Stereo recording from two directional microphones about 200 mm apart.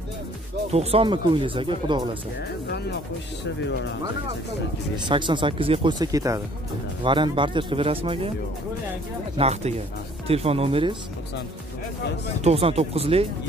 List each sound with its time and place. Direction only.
0.7 s speech: 30° right (ahead or behind)
4.9 s speech: 25° right (ahead or behind)
9.4 s speech: 30° right (ahead or behind)
12.4 s speech: 30° right (ahead or behind)